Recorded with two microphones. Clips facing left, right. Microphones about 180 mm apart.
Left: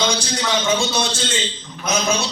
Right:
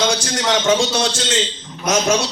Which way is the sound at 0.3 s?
90° right.